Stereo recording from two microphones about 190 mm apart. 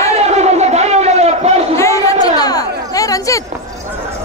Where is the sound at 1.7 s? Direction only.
15° left (ahead or behind).